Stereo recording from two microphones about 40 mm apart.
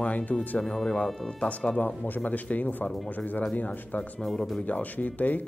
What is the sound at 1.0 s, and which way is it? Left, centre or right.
Speech, centre.